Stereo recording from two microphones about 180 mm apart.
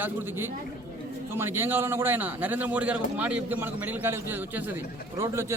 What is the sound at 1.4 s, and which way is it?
A man's voice, 15° right (ahead or behind).